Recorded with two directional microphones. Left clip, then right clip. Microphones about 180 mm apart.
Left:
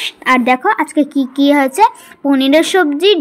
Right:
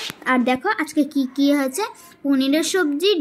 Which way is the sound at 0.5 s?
20° left (ahead or behind).